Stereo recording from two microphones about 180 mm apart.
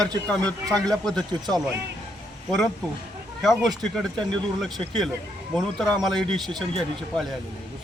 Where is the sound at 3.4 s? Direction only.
Centre (ahead or behind).